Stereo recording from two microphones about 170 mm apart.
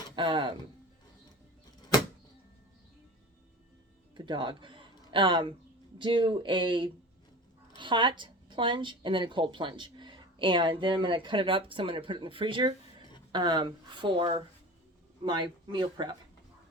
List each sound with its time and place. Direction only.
0.2 s speech: 30° right (ahead or behind)
4.3 s a woman's voice: 30° right (ahead or behind)